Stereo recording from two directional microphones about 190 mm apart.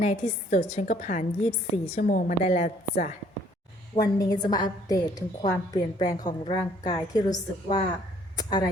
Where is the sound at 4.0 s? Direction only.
20° left (ahead or behind).